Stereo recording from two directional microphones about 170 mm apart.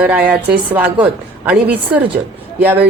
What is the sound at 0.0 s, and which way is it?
A woman's voice, 5° right (ahead or behind).